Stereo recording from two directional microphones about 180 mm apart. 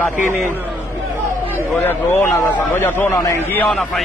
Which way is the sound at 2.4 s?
15° left (ahead or behind).